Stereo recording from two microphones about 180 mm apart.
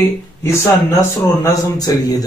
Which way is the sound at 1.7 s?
20° left (ahead or behind).